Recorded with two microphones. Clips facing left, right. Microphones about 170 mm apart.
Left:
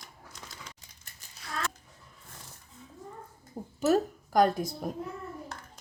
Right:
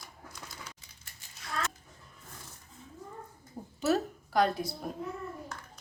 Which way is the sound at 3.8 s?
45° left (ahead or behind).